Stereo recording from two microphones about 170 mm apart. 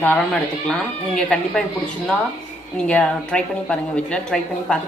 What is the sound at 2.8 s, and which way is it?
A woman's voice, 5° left (ahead or behind).